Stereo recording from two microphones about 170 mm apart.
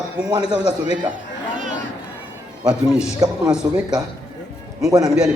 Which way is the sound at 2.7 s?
5° right (ahead or behind).